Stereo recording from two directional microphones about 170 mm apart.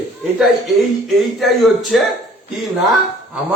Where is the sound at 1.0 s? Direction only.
Centre (ahead or behind).